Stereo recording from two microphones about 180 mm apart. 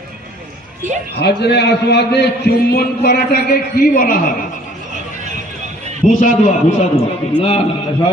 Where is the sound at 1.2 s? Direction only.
65° left (ahead or behind).